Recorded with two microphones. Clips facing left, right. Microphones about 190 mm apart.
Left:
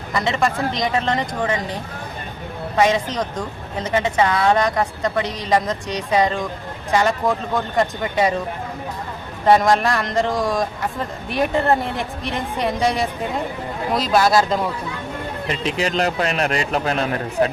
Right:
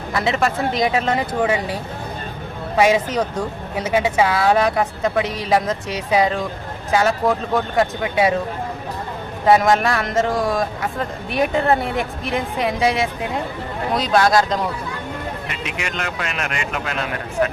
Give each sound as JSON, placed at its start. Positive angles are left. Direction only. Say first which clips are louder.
{"t": 0.1, "sound": "a woman's voice", "louder": "even", "side_deg": -5}
{"t": 9.5, "sound": "a woman's voice", "louder": "even", "side_deg": 0}
{"t": 15.4, "sound": "a man's voice", "louder": "left 6 dB", "side_deg": 30}